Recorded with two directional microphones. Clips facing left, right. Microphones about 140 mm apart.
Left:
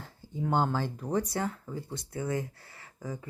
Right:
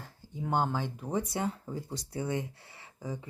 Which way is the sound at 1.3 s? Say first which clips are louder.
Even; 25° right (ahead or behind).